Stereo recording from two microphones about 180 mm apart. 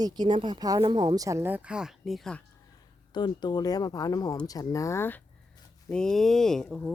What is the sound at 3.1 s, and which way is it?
Speech, 25° left (ahead or behind).